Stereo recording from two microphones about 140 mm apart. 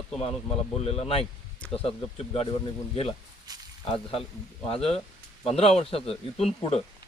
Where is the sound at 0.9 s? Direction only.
45° left (ahead or behind).